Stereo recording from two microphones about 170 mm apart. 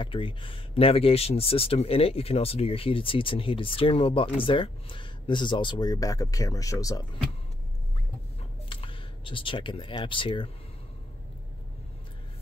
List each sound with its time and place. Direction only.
0.0 s speech: 30° left (ahead or behind)
8.6 s speech: 30° left (ahead or behind)